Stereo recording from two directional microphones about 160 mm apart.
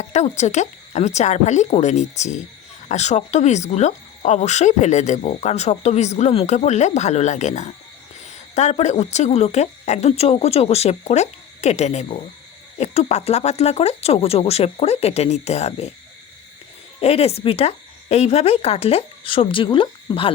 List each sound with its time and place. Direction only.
0.0 s speech: 45° left (ahead or behind)
17.0 s speech: 40° left (ahead or behind)